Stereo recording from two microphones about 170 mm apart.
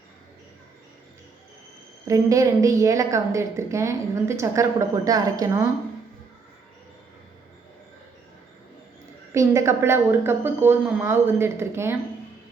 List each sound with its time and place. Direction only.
2.0 s a woman's voice: 20° right (ahead or behind)
9.3 s a woman's voice: 20° right (ahead or behind)